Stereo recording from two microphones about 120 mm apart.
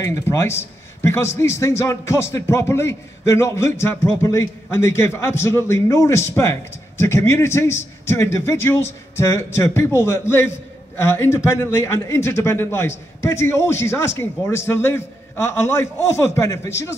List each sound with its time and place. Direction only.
0.0 s a man's voice: 25° left (ahead or behind)